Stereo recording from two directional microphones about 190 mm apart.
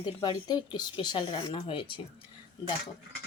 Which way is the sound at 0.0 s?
20° left (ahead or behind).